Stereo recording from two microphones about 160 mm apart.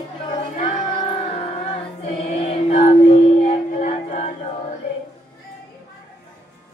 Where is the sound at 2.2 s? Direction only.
40° left (ahead or behind).